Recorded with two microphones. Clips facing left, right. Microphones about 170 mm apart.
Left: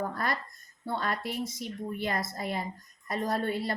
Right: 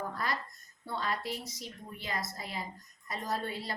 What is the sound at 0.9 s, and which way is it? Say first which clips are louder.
A woman's voice: left 3 dB; 55° left (ahead or behind).